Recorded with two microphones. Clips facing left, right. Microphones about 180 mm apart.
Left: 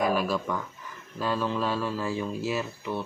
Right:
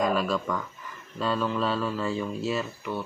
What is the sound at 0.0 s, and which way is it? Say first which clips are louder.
Speech: even; 10° left (ahead or behind).